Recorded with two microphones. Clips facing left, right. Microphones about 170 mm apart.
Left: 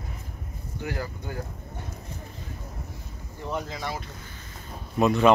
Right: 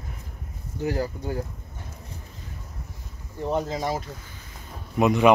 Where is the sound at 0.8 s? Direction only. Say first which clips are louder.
Right 6 dB; 35° right (ahead or behind).